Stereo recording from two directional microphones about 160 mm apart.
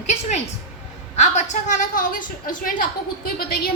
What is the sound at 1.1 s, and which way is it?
A woman's voice, 45° left (ahead or behind).